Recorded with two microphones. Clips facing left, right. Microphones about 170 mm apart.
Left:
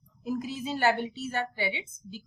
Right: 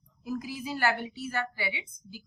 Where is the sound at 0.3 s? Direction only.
25° left (ahead or behind).